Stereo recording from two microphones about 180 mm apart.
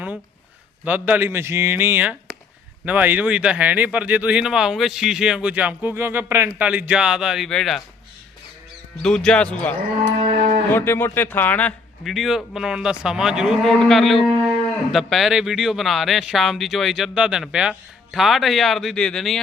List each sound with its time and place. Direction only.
0.9 s speech: 10° right (ahead or behind)
9.0 s speech: 5° left (ahead or behind)
10.2 s cattle: 35° right (ahead or behind)
10.7 s speech: 10° left (ahead or behind)